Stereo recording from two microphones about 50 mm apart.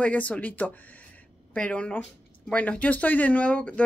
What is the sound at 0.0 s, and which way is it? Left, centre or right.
Speech, left.